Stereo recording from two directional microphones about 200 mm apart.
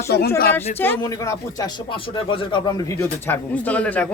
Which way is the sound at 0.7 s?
10° left (ahead or behind).